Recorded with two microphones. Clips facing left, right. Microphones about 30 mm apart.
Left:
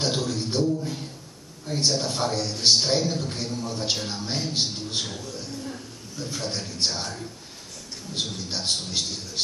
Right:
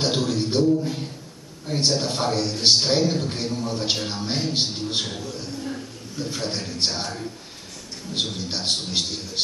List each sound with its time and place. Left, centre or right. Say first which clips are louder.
0.0 s a man's voice: right 3 dB; centre